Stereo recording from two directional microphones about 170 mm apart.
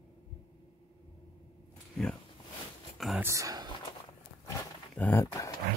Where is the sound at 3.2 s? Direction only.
20° right (ahead or behind).